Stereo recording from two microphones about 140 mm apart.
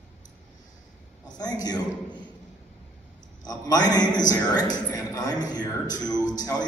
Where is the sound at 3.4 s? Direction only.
30° left (ahead or behind).